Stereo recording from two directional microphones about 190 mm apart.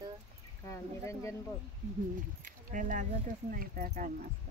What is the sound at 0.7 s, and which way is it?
Speech, 15° left (ahead or behind).